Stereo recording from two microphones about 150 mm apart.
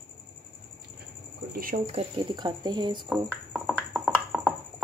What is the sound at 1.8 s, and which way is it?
Speech, 40° right (ahead or behind).